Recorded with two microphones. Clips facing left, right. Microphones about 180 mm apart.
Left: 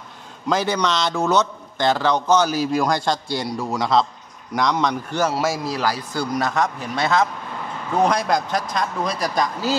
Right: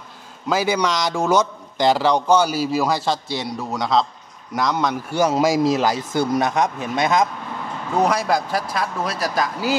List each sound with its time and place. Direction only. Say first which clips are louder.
0.5 s a man's voice: right 1 dB; 10° right (ahead or behind)
5.3 s speech: right 6 dB; 20° right (ahead or behind)
8.0 s speech: even; 5° right (ahead or behind)